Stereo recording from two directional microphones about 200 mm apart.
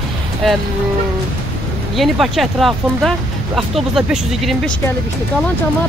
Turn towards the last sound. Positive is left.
turn(degrees=0)  # may be behind; listen again after turning